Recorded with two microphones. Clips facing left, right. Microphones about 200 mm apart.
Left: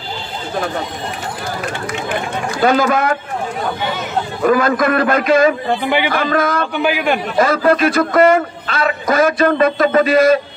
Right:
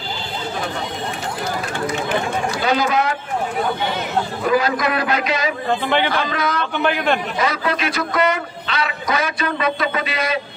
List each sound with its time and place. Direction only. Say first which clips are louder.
2.6 s a man's voice: left 6 dB; 50° left (ahead or behind)
4.5 s a man's voice: left 6 dB; 50° left (ahead or behind)
5.7 s a man's voice: left 2 dB; 10° left (ahead or behind)
6.0 s a man's voice: left 5 dB; 50° left (ahead or behind)
6.7 s a man's voice: left 2 dB; 10° left (ahead or behind)
7.3 s a man's voice: left 8 dB; 50° left (ahead or behind)